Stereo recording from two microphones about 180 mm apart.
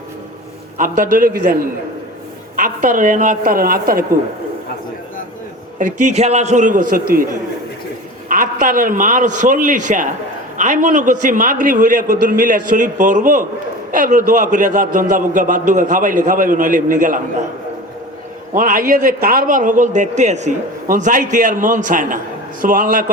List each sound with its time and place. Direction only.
0.8 s a man's voice: 50° right (ahead or behind)
2.6 s a man's voice: 45° right (ahead or behind)
5.8 s a man's voice: 40° right (ahead or behind)
8.3 s a man's voice: 50° right (ahead or behind)
18.5 s a man's voice: 50° right (ahead or behind)